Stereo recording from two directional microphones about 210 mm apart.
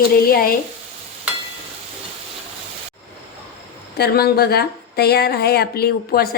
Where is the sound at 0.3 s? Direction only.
45° left (ahead or behind).